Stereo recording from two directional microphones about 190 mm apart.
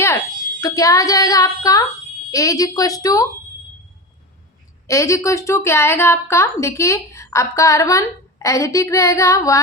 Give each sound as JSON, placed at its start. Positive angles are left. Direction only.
{"t": 0.6, "sound": "a woman's voice", "side_deg": 20}
{"t": 4.9, "sound": "a woman's voice", "side_deg": 15}